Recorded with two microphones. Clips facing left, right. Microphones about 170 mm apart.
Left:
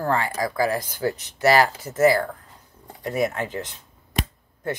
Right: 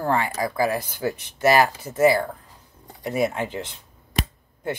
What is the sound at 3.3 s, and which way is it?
Speech, 10° right (ahead or behind).